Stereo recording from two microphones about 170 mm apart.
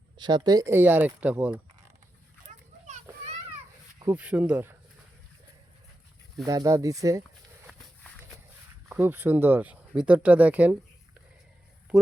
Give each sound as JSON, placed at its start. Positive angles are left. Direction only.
{"t": 0.2, "sound": "speech", "side_deg": -25}
{"t": 2.5, "sound": "a sound", "side_deg": -40}
{"t": 4.0, "sound": "speech", "side_deg": -5}
{"t": 6.4, "sound": "speech", "side_deg": -20}
{"t": 8.9, "sound": "speech", "side_deg": -10}